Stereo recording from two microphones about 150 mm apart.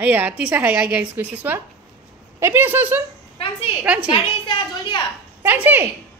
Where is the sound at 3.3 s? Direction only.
40° left (ahead or behind).